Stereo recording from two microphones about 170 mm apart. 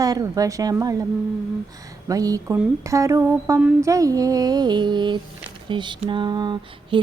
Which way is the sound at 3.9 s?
20° right (ahead or behind).